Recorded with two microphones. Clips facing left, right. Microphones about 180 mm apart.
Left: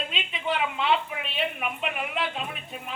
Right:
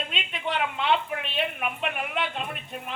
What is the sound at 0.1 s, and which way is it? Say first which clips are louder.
A woman's voice: left 1 dB; centre (ahead or behind).